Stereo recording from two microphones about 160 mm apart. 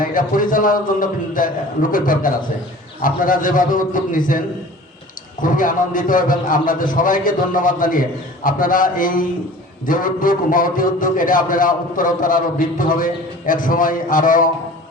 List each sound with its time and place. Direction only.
0.0 s a man's voice: 60° left (ahead or behind)